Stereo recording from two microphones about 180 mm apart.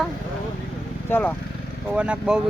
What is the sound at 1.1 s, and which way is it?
Speech, 10° left (ahead or behind).